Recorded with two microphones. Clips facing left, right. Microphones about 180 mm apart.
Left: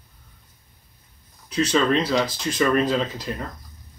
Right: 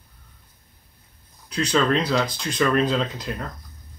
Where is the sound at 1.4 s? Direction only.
5° left (ahead or behind).